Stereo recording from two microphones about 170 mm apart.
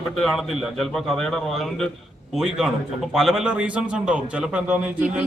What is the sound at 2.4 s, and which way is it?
A man's voice, centre (ahead or behind).